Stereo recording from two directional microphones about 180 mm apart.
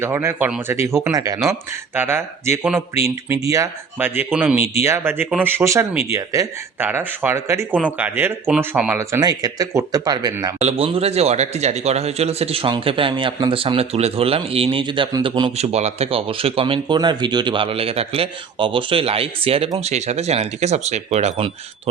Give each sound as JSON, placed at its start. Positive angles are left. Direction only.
{"t": 0.0, "sound": "speech", "side_deg": -15}
{"t": 10.6, "sound": "speech", "side_deg": -35}